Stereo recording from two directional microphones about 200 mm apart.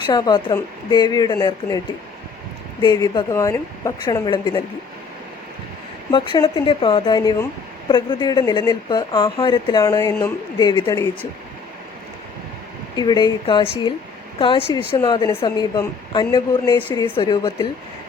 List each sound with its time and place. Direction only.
0.0 s speech: 20° left (ahead or behind)
2.8 s speech: 20° left (ahead or behind)
6.3 s speech: 25° left (ahead or behind)
13.0 s speech: 20° left (ahead or behind)